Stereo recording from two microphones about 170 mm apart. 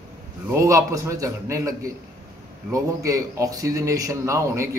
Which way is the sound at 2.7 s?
20° right (ahead or behind).